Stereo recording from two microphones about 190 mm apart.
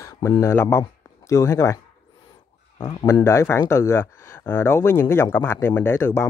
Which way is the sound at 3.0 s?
15° left (ahead or behind).